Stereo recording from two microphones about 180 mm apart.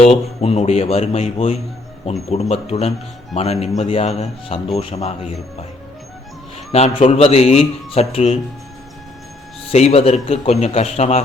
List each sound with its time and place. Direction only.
0.0 s speech: 35° left (ahead or behind)
6.7 s speech: 35° left (ahead or behind)
9.7 s speech: 35° left (ahead or behind)